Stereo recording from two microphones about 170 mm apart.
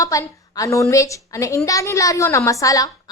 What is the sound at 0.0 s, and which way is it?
A woman's voice, 20° left (ahead or behind).